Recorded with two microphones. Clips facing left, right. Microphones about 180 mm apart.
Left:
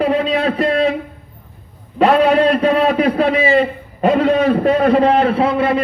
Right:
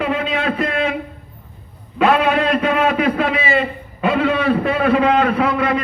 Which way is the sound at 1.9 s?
35° left (ahead or behind).